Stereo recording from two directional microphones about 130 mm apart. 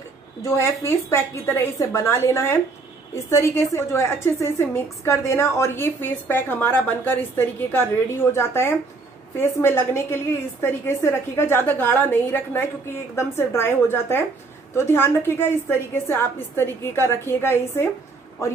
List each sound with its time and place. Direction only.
0.4 s a woman's voice: 20° left (ahead or behind)